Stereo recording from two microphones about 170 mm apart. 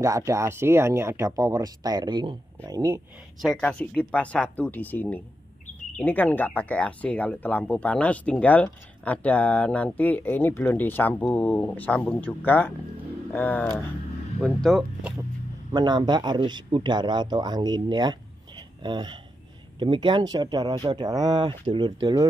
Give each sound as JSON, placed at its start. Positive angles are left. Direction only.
{"t": 0.0, "sound": "speech", "side_deg": -20}
{"t": 3.4, "sound": "speech", "side_deg": 5}
{"t": 14.4, "sound": "speech", "side_deg": 0}
{"t": 15.7, "sound": "speech", "side_deg": -25}